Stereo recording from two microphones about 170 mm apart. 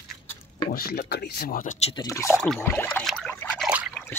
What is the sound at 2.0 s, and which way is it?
Speech, 20° left (ahead or behind).